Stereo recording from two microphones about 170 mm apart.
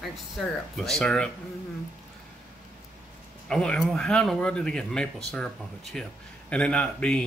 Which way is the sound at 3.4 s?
5° left (ahead or behind).